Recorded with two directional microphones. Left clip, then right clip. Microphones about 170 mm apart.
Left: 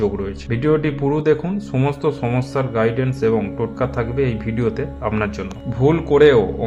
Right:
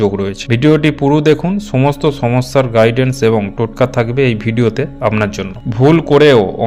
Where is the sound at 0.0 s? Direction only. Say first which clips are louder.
Right 7 dB; 25° right (ahead or behind).